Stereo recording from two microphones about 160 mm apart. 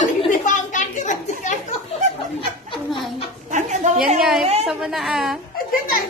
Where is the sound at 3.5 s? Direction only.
50° right (ahead or behind).